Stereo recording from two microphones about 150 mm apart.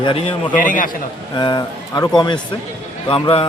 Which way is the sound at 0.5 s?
60° left (ahead or behind).